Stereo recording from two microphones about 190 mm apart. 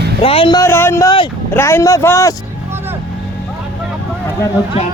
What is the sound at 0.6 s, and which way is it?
Speech, 15° left (ahead or behind).